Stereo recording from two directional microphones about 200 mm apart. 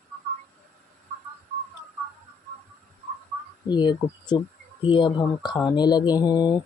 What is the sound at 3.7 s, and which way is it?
Speech, 20° left (ahead or behind).